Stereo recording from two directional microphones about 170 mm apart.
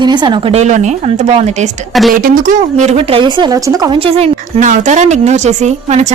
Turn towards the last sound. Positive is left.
turn(degrees=-40)  # may be behind; listen again after turning